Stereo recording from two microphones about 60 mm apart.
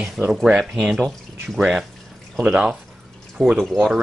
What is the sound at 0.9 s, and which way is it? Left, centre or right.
Speech, centre.